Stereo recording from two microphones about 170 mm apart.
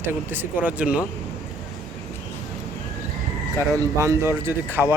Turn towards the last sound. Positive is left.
turn(degrees=-15)  # may be behind; listen again after turning